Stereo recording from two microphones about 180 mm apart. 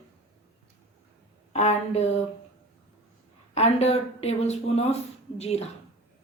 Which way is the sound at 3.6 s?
35° left (ahead or behind).